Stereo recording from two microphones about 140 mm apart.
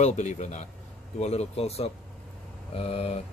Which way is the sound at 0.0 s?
55° left (ahead or behind).